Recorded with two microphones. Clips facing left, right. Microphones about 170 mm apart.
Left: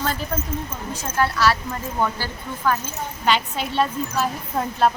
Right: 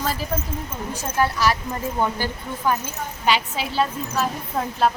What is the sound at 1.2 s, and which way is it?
A woman's voice, 15° right (ahead or behind).